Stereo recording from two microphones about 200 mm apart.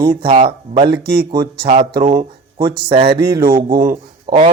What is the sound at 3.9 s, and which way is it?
Speech, 20° right (ahead or behind).